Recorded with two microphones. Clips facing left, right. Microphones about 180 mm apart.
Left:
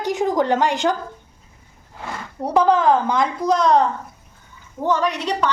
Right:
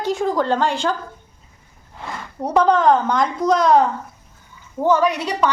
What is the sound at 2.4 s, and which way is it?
A woman's voice, centre (ahead or behind).